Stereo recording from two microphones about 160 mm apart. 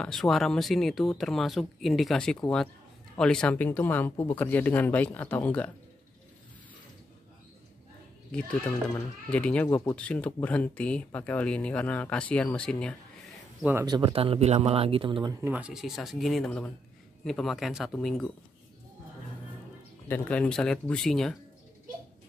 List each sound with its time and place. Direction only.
0.0 s speech: centre (ahead or behind)
8.3 s speech: 10° left (ahead or behind)
13.8 s speech: 25° right (ahead or behind)
15.4 s speech: 10° right (ahead or behind)
20.1 s speech: 10° left (ahead or behind)